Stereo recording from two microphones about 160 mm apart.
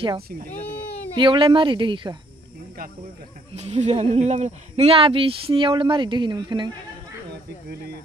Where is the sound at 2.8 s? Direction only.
60° right (ahead or behind).